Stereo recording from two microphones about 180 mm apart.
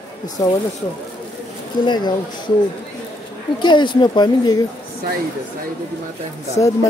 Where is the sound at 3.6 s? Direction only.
25° left (ahead or behind).